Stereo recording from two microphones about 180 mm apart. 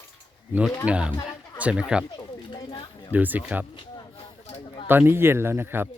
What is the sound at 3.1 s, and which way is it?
Speech, 10° right (ahead or behind).